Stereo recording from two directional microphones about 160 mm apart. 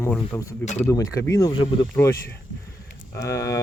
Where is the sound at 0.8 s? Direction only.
20° left (ahead or behind).